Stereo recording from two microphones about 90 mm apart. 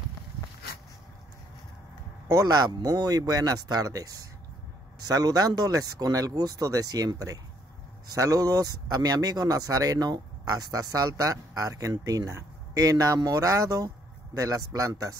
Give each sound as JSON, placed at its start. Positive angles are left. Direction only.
{"t": 2.2, "sound": "speech", "side_deg": -40}